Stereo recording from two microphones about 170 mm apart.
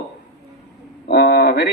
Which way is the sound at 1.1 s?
70° left (ahead or behind).